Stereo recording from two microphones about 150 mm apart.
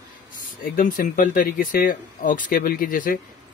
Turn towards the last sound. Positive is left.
turn(degrees=70)  # may be behind; listen again after turning